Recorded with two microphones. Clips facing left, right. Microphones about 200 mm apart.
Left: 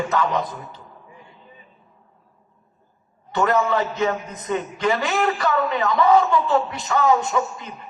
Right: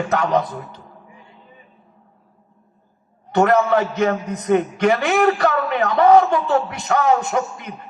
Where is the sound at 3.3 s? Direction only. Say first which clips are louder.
Right 4 dB; 60° right (ahead or behind).